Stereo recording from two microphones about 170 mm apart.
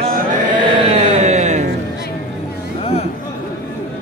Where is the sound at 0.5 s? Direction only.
40° right (ahead or behind).